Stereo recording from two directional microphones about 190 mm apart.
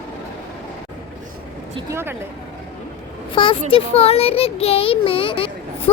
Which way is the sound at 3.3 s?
25° left (ahead or behind).